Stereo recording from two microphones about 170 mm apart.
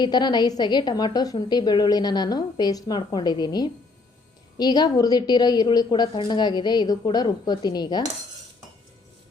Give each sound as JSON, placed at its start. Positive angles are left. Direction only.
{"t": 0.0, "sound": "a woman's voice", "side_deg": 25}